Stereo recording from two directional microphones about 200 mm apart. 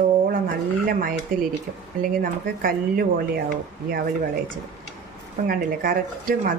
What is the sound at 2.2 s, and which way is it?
Speech, 45° right (ahead or behind).